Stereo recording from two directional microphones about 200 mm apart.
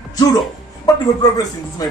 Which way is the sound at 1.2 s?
20° left (ahead or behind).